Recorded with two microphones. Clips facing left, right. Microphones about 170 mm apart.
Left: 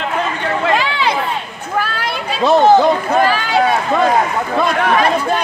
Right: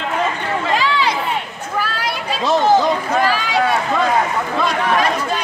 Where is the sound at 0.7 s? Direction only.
55° left (ahead or behind).